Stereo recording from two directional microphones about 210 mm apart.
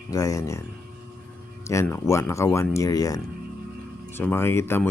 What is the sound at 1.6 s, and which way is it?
Speech, 15° left (ahead or behind).